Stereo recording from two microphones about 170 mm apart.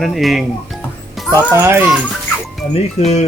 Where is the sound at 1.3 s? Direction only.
15° right (ahead or behind).